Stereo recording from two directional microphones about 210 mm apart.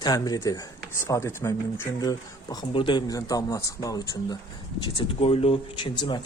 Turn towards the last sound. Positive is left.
turn(degrees=20)  # may be behind; listen again after turning